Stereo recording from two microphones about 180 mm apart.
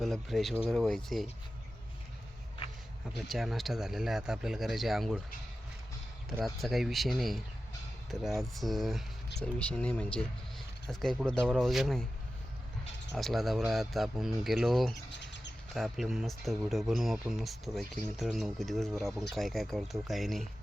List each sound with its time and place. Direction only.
0.0 s speech: centre (ahead or behind)
3.2 s speech: centre (ahead or behind)
6.4 s speech: centre (ahead or behind)
13.1 s speech: centre (ahead or behind)
15.1 s bird: 75° left (ahead or behind)
15.7 s speech: centre (ahead or behind)